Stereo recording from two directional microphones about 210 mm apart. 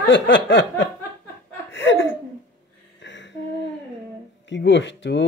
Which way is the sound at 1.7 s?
60° left (ahead or behind).